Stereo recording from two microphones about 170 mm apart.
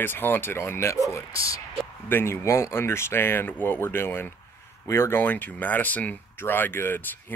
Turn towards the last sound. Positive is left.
turn(degrees=15)  # may be behind; listen again after turning